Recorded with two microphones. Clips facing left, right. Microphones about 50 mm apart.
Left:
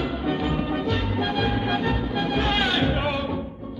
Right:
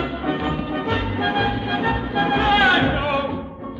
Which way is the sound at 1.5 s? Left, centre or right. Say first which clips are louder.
Right 1 dB; centre.